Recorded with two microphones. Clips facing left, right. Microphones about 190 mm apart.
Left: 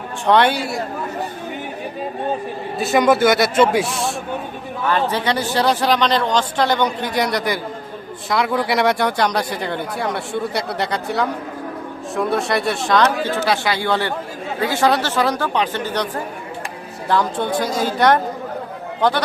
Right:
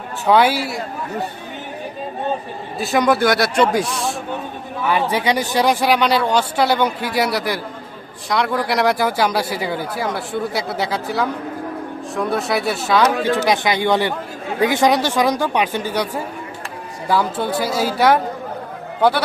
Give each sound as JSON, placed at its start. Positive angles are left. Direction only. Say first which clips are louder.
{"t": 0.3, "sound": "speech", "louder": "right 1 dB", "side_deg": -5}
{"t": 2.7, "sound": "speech", "louder": "left 1 dB", "side_deg": 0}
{"t": 4.9, "sound": "speech", "louder": "right 1 dB", "side_deg": -10}